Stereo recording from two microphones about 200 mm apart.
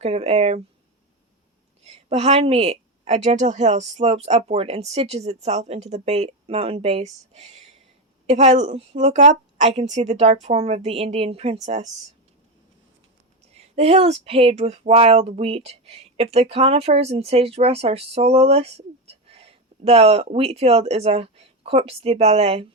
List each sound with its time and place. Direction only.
0.0 s a woman's voice: 30° right (ahead or behind)
1.8 s a woman's voice: 30° right (ahead or behind)
13.5 s speech: 30° right (ahead or behind)